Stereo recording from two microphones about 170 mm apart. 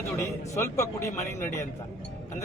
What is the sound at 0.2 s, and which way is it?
A man's voice, 15° left (ahead or behind).